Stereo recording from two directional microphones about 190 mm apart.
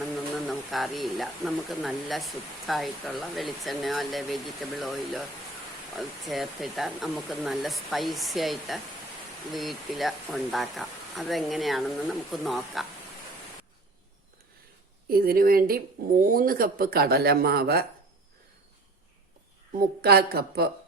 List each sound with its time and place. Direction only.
0.0 s speech: centre (ahead or behind)
15.1 s speech: 50° right (ahead or behind)
19.7 s speech: 50° right (ahead or behind)